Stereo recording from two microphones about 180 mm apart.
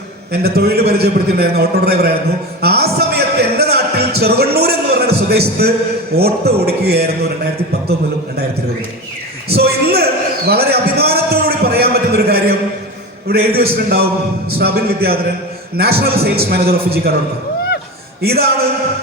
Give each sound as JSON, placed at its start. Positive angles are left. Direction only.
{"t": 0.4, "sound": "a man's voice", "side_deg": -60}
{"t": 2.6, "sound": "music", "side_deg": -60}
{"t": 5.6, "sound": "a man's voice", "side_deg": -60}
{"t": 9.6, "sound": "a sound", "side_deg": -60}
{"t": 13.2, "sound": "a man's voice", "side_deg": -60}
{"t": 18.2, "sound": "a man's voice", "side_deg": -60}